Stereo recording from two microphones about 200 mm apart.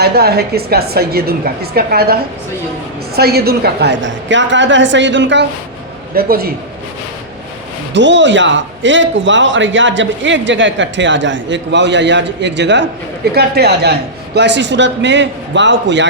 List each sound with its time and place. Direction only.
0.0 s a woman's voice: 50° right (ahead or behind)
3.2 s a man's voice: 50° right (ahead or behind)
6.1 s a woman's voice: 50° right (ahead or behind)
7.9 s a man's voice: 65° right (ahead or behind)